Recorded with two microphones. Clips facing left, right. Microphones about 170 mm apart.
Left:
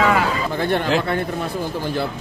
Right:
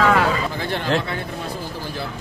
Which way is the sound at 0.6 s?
55° left (ahead or behind).